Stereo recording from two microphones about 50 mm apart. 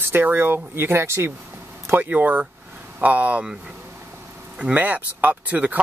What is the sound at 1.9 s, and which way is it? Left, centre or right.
Speech, right.